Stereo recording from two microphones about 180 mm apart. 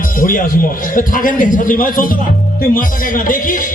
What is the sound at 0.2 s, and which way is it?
Speech, 50° left (ahead or behind).